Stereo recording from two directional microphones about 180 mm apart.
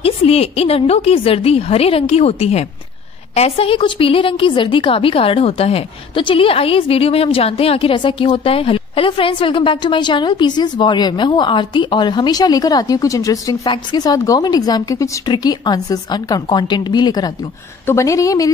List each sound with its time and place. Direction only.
0.0 s a woman's voice: 35° left (ahead or behind); by 18.5 s 20° left (ahead or behind)